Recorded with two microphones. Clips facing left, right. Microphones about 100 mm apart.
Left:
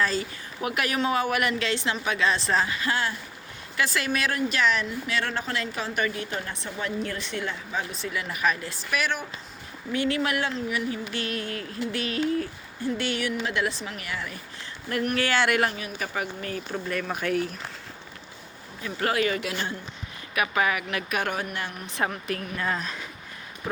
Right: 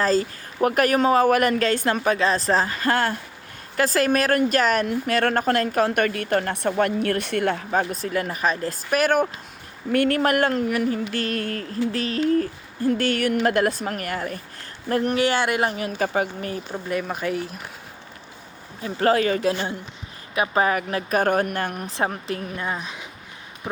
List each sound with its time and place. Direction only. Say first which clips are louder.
0.0 s a woman's voice: right 6 dB; 40° right (ahead or behind)
15.1 s a woman's voice: even; 20° right (ahead or behind)
16.7 s speech: right 3 dB; 10° right (ahead or behind)
17.1 s speech: right 1 dB; centre (ahead or behind)
18.8 s speech: right 6 dB; 35° right (ahead or behind)
21.8 s a woman's voice: right 3 dB; 35° right (ahead or behind)
22.6 s speech: even; 15° right (ahead or behind)